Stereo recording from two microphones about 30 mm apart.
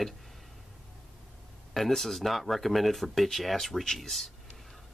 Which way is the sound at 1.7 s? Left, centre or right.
Centre.